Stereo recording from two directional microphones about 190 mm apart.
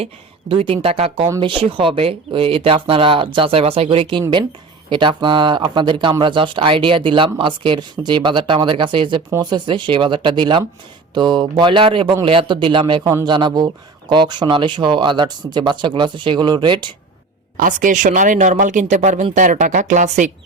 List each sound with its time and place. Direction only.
0.0 s speech: 30° right (ahead or behind)
17.6 s speech: 45° right (ahead or behind)